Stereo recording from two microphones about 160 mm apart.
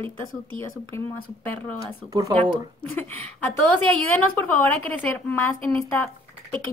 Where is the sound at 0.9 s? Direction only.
15° left (ahead or behind).